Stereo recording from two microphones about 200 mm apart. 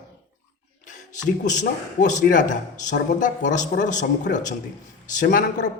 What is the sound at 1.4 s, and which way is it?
A man's voice, 40° left (ahead or behind).